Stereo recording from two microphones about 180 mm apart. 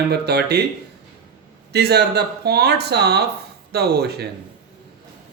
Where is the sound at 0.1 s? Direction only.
65° right (ahead or behind).